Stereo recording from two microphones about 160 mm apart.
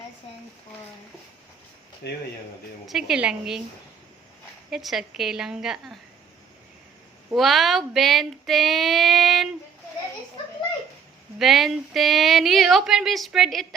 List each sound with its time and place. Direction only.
2.0 s speech: 90° left
2.8 s speech: centre (ahead or behind)
4.7 s speech: centre (ahead or behind)
7.3 s speech: centre (ahead or behind)
11.3 s speech: centre (ahead or behind)